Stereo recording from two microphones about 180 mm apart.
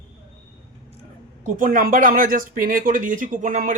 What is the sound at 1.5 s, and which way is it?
A man's voice, 50° right (ahead or behind).